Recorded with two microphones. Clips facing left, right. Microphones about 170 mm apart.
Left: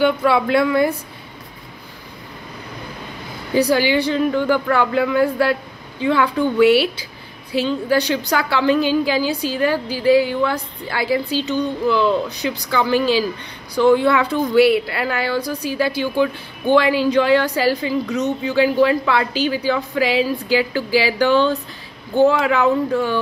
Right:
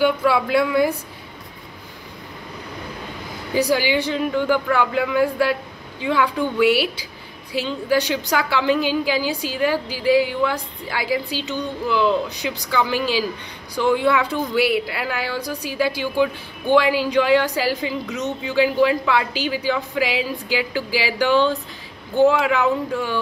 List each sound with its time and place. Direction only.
0.0 s a woman's voice: 5° right (ahead or behind)
3.5 s a woman's voice: 15° right (ahead or behind)